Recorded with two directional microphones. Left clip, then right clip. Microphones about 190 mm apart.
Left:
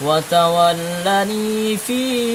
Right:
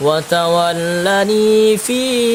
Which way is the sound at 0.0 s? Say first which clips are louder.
Right 1 dB; 50° right (ahead or behind).